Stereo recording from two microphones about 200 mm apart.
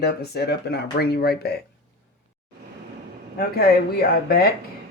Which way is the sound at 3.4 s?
50° left (ahead or behind).